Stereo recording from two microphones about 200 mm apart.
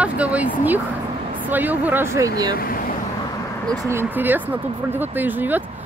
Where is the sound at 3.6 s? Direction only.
15° right (ahead or behind).